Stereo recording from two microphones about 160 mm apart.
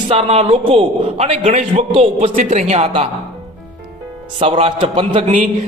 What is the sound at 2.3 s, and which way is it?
Speech, 50° right (ahead or behind).